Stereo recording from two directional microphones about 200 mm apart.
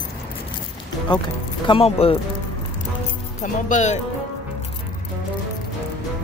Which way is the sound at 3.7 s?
35° left (ahead or behind).